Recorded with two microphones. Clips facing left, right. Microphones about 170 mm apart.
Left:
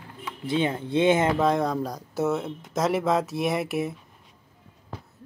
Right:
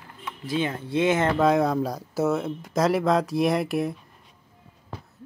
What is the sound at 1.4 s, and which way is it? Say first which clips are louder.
Speech: right 3 dB; 5° right (ahead or behind).